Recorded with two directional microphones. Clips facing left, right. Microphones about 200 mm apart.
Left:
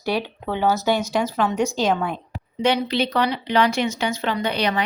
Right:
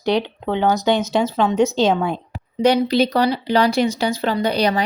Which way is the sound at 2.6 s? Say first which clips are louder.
Right 5 dB; 40° right (ahead or behind).